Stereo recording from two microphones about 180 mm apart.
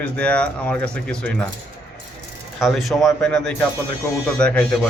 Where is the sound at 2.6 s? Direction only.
Centre (ahead or behind).